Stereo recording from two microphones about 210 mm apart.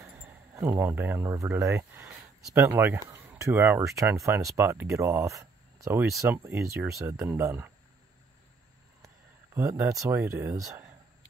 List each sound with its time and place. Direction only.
0.0 s a sound: 10° right (ahead or behind)
2.5 s speech: 10° right (ahead or behind)
9.0 s speech: 15° right (ahead or behind)